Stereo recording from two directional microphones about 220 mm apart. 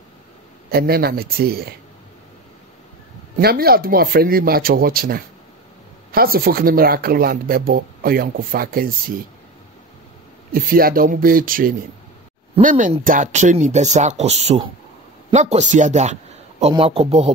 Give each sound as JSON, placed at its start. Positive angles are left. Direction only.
{"t": 0.7, "sound": "speech", "side_deg": -45}
{"t": 3.3, "sound": "speech", "side_deg": -45}
{"t": 10.5, "sound": "a man's voice", "side_deg": -40}